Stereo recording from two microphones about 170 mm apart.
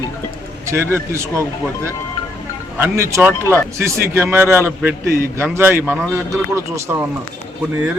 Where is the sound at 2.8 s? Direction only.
15° right (ahead or behind).